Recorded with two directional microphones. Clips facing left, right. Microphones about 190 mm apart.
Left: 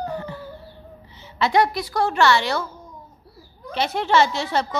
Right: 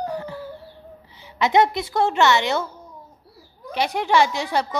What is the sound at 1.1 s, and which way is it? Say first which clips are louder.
A woman's voice: right 1 dB; 15° right (ahead or behind).